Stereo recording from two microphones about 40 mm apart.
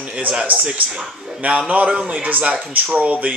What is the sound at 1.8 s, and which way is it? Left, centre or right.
Speech, right.